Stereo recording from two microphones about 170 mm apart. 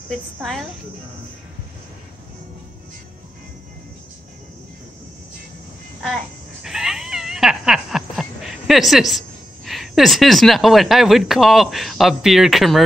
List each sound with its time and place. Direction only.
0.4 s speech: centre (ahead or behind)
6.0 s babbling: centre (ahead or behind)
9.7 s speech: centre (ahead or behind)